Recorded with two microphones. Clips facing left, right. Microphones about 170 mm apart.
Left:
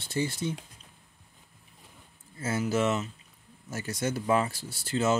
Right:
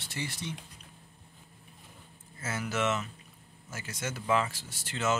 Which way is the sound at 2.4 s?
30° left (ahead or behind).